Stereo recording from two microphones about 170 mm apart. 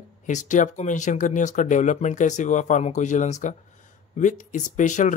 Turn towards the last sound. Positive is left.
turn(degrees=45)  # may be behind; listen again after turning